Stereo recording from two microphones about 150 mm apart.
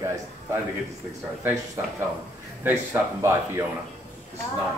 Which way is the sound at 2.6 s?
15° right (ahead or behind).